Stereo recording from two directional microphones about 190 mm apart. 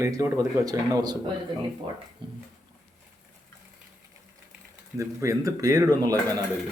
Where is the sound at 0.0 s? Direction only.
15° right (ahead or behind).